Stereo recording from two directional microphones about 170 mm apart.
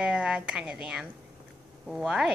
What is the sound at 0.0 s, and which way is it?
A woman's voice, 5° right (ahead or behind).